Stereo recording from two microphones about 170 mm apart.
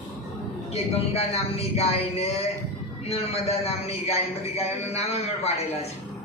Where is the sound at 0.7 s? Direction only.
35° left (ahead or behind).